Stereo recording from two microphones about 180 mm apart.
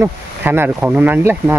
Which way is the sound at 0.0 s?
10° right (ahead or behind).